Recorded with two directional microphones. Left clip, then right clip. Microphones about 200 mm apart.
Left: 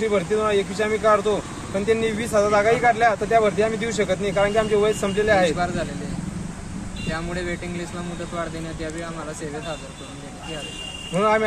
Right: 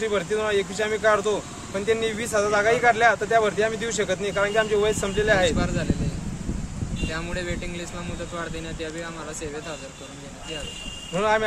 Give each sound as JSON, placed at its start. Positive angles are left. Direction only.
{"t": 0.0, "sound": "speech", "side_deg": -5}
{"t": 11.1, "sound": "speech", "side_deg": -5}